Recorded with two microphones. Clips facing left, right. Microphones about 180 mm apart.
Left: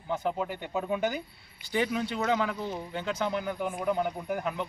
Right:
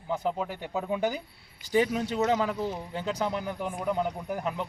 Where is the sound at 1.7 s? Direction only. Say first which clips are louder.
Right 3 dB; 40° right (ahead or behind).